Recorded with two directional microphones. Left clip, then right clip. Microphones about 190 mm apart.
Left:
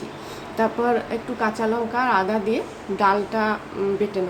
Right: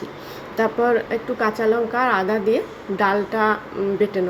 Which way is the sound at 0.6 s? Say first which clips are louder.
Right 2 dB; 10° right (ahead or behind).